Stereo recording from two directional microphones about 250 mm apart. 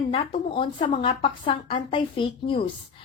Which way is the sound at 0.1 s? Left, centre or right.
Left.